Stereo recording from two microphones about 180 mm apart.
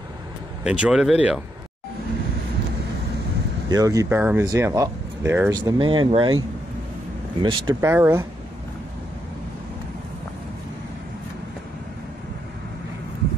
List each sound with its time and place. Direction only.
0.7 s speech: 5° right (ahead or behind)
3.6 s speech: 20° right (ahead or behind)
5.6 s speech: 25° right (ahead or behind)
7.8 s speech: 15° right (ahead or behind)